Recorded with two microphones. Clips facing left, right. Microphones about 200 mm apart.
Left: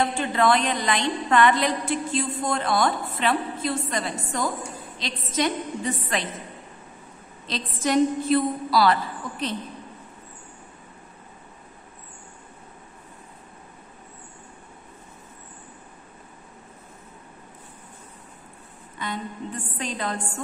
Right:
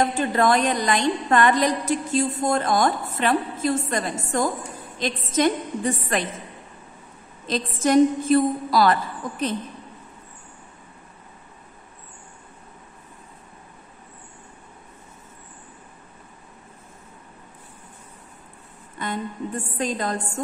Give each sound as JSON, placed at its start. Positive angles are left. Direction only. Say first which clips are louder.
{"t": 0.0, "sound": "a woman's voice", "louder": "right 2 dB", "side_deg": -40}
{"t": 7.4, "sound": "a woman's voice", "louder": "right 4 dB", "side_deg": -45}
{"t": 18.9, "sound": "a woman's voice", "louder": "right 3 dB", "side_deg": -50}